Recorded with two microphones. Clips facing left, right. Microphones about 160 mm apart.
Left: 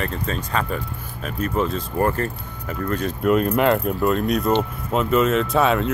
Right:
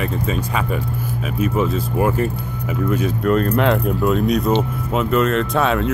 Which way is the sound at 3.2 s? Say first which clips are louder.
Even; 5° left (ahead or behind).